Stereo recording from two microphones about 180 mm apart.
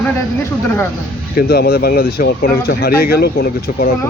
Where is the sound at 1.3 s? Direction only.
60° left (ahead or behind).